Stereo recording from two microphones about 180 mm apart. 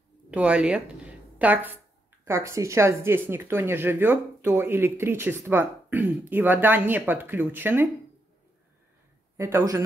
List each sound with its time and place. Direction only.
0.3 s a woman's voice: 5° right (ahead or behind)
9.4 s speech: 15° right (ahead or behind)